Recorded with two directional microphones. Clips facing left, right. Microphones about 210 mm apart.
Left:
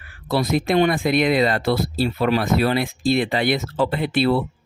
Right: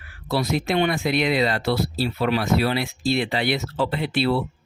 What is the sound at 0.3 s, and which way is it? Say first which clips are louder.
Speech: left 3 dB; 50° left (ahead or behind).